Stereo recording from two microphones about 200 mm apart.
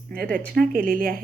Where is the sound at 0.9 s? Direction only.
45° right (ahead or behind).